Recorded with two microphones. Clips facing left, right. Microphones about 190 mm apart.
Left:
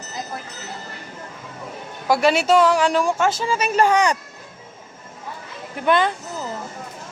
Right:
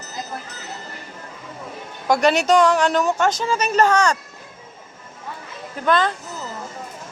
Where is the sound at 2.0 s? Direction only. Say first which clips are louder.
Even; 5° left (ahead or behind).